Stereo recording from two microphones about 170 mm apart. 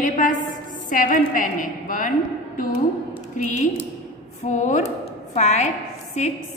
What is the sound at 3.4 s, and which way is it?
A woman's voice, 45° left (ahead or behind).